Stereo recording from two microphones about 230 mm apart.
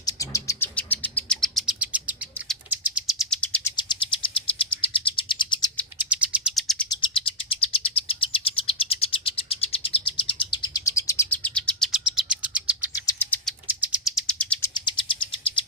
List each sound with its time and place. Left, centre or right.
0.0 s bird: centre
3.8 s bird: left
6.1 s bird: centre
6.8 s bird: left
10.5 s chirp: centre
13.1 s bird: centre
13.7 s bird: centre
14.7 s chirp: centre